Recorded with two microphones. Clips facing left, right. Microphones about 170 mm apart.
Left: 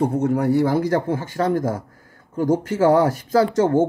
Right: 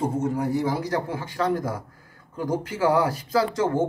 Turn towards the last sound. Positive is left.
turn(degrees=45)  # may be behind; listen again after turning